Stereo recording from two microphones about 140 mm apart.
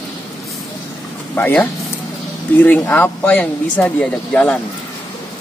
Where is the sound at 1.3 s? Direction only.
15° left (ahead or behind).